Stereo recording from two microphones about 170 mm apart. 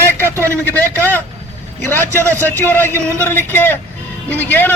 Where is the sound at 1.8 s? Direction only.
15° left (ahead or behind).